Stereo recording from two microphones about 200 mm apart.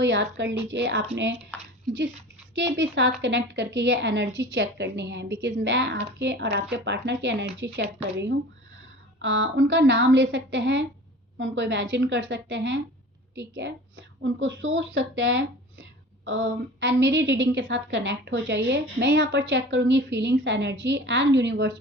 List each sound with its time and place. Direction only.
0.0 s a woman's voice: 60° right (ahead or behind)
2.6 s a woman's voice: 65° right (ahead or behind)